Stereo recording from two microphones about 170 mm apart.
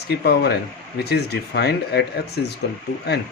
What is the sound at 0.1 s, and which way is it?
Speech, 75° left (ahead or behind).